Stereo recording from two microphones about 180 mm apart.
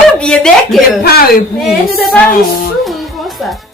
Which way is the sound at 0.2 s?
5° left (ahead or behind).